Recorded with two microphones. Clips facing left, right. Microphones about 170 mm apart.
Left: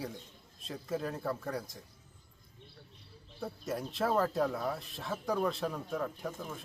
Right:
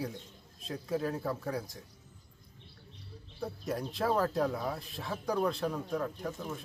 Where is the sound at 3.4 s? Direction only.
Centre (ahead or behind).